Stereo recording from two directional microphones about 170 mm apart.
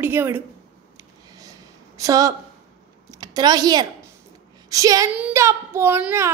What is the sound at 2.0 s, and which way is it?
A woman's voice, 20° right (ahead or behind).